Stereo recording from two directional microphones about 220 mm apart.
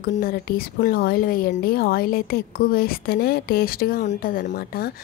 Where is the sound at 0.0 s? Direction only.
40° left (ahead or behind).